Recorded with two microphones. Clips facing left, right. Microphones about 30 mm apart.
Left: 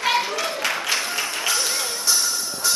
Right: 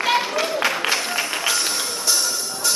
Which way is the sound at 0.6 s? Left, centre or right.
Centre.